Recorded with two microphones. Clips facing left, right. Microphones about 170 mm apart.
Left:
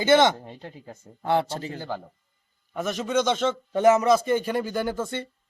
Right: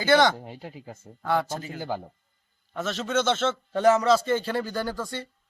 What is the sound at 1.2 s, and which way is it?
Speech, 25° left (ahead or behind).